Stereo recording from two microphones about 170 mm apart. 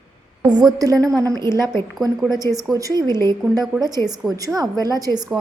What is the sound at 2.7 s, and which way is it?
A woman's voice, 20° right (ahead or behind).